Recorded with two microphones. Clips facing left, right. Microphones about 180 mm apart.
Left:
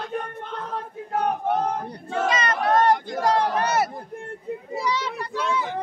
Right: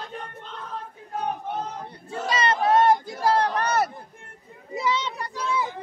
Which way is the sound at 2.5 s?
75° left (ahead or behind).